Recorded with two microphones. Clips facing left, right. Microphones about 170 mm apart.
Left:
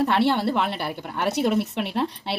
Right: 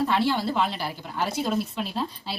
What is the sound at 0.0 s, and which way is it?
A woman's voice, 65° left (ahead or behind).